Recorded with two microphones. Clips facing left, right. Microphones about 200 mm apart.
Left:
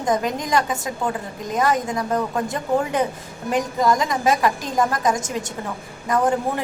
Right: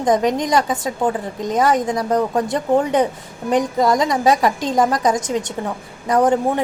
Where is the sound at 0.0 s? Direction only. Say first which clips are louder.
Right 5 dB; 20° right (ahead or behind).